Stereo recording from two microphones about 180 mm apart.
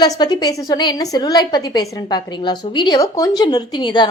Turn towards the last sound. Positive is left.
turn(degrees=25)  # may be behind; listen again after turning